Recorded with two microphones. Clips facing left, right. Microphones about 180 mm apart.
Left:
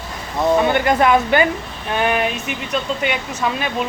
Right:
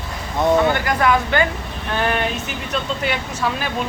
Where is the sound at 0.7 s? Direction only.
20° left (ahead or behind).